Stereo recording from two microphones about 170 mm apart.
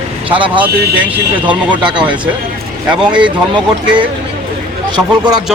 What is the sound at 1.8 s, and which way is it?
Speech, 25° right (ahead or behind).